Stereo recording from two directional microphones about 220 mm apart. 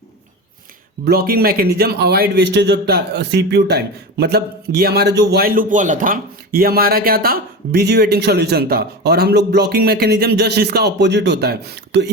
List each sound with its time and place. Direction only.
1.0 s speech: 45° right (ahead or behind)